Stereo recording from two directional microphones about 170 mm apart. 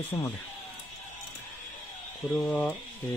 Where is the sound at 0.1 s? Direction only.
15° left (ahead or behind).